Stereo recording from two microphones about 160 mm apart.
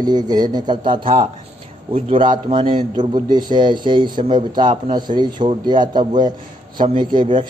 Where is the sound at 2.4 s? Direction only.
30° right (ahead or behind).